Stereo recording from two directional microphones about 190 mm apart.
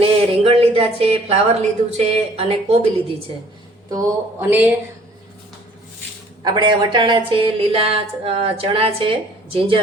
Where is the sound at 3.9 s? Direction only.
15° right (ahead or behind).